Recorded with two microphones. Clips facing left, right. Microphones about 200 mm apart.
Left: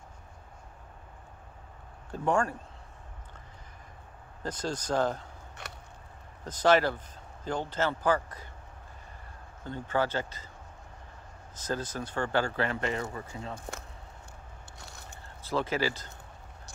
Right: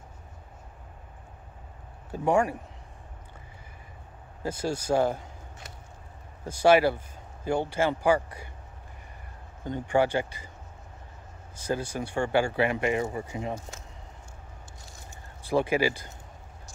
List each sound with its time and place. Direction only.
2.0 s speech: 10° right (ahead or behind)
4.4 s speech: 10° right (ahead or behind)
5.6 s a sound: 65° left (ahead or behind)
6.4 s speech: 10° right (ahead or behind)
9.7 s speech: 15° right (ahead or behind)
11.5 s speech: 10° right (ahead or behind)
13.6 s speech: 60° left (ahead or behind)
14.8 s a sound: 65° left (ahead or behind)
15.4 s speech: 15° right (ahead or behind)